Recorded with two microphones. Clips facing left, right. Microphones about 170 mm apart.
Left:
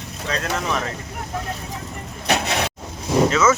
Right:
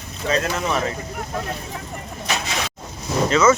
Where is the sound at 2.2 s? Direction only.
60° left (ahead or behind).